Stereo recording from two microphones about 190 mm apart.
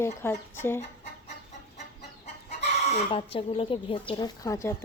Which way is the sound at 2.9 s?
35° left (ahead or behind).